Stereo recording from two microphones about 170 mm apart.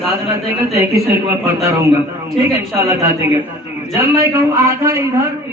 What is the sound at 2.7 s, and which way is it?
A man's voice, 15° right (ahead or behind).